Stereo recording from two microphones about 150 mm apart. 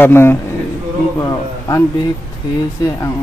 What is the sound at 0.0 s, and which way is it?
Speech, 15° left (ahead or behind).